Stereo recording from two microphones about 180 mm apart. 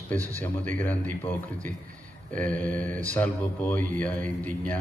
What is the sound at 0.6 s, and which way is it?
Speech, 10° left (ahead or behind).